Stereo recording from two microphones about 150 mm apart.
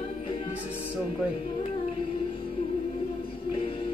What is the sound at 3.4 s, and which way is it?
Music, 35° left (ahead or behind).